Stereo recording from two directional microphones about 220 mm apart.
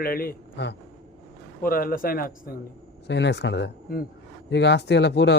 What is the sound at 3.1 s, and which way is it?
Speech, 50° left (ahead or behind).